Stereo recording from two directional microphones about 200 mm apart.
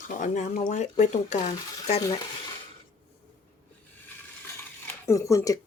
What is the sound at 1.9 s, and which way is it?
Speech, 15° left (ahead or behind).